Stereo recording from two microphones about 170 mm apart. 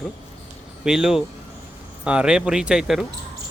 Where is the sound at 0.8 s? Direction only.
5° right (ahead or behind).